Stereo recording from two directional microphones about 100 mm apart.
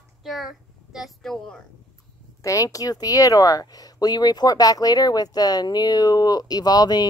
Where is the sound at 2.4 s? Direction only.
35° left (ahead or behind).